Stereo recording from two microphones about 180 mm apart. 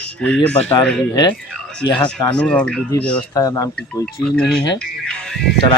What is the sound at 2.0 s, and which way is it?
Speech, 5° left (ahead or behind).